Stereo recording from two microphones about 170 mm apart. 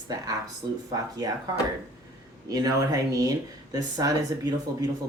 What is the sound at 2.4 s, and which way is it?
Speech, 20° right (ahead or behind).